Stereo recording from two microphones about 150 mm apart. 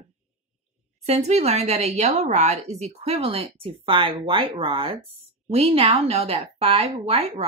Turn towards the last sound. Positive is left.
turn(degrees=-45)  # may be behind; listen again after turning